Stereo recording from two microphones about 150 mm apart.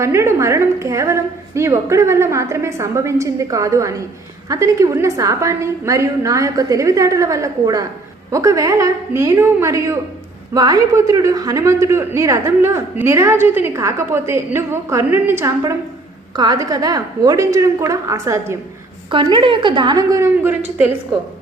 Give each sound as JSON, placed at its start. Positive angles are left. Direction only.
{"t": 0.0, "sound": "a man's voice", "side_deg": -20}
{"t": 19.1, "sound": "a man's voice", "side_deg": -35}